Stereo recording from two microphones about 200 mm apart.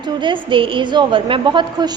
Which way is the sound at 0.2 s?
25° right (ahead or behind).